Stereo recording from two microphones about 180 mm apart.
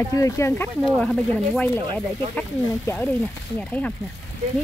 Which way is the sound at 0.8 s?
5° left (ahead or behind).